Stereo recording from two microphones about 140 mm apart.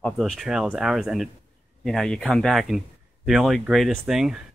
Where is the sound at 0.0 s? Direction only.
Centre (ahead or behind).